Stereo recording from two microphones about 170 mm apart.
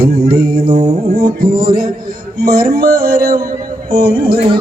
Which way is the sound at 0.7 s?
40° right (ahead or behind).